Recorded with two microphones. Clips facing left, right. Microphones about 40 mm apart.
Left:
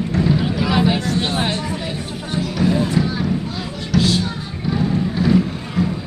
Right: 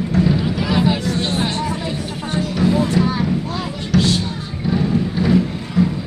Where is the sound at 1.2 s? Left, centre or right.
Left.